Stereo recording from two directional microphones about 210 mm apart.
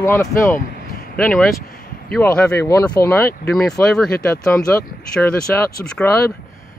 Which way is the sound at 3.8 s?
5° left (ahead or behind).